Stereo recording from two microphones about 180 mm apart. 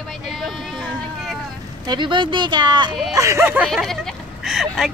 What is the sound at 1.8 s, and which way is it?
Speech, 25° right (ahead or behind).